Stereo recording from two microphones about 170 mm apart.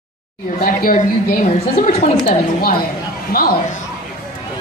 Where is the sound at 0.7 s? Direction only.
55° left (ahead or behind).